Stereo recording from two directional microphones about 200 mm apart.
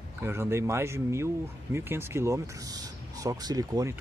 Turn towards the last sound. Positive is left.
turn(degrees=-15)  # may be behind; listen again after turning